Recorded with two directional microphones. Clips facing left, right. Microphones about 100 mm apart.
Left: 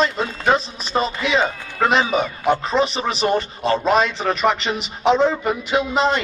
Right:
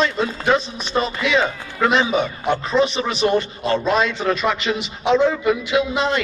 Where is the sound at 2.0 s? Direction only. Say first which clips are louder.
Even; 5° left (ahead or behind).